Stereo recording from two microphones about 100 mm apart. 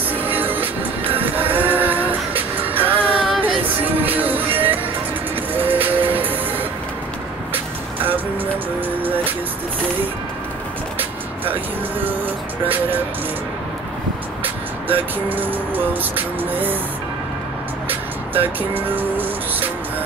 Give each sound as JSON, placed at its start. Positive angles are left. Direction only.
{"t": 0.2, "sound": "music", "side_deg": -20}
{"t": 7.5, "sound": "vehicle", "side_deg": -20}
{"t": 9.0, "sound": "music", "side_deg": -20}
{"t": 14.4, "sound": "music", "side_deg": -20}
{"t": 17.8, "sound": "music", "side_deg": -20}